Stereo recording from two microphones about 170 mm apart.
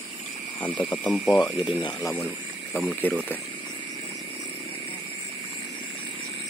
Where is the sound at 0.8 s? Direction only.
10° left (ahead or behind).